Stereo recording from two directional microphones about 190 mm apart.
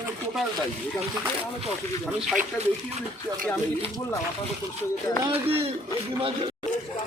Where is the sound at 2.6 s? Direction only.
35° right (ahead or behind).